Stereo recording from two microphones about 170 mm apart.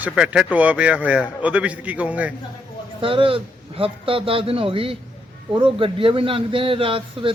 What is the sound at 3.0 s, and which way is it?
A man's voice, 30° right (ahead or behind).